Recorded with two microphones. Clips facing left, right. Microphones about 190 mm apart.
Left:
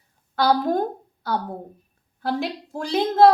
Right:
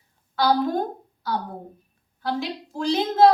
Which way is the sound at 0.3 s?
55° left (ahead or behind).